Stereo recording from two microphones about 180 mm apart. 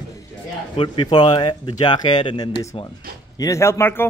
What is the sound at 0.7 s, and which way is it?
Speech, 25° left (ahead or behind).